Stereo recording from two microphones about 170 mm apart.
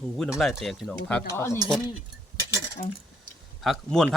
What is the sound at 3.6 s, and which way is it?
Speech, centre (ahead or behind).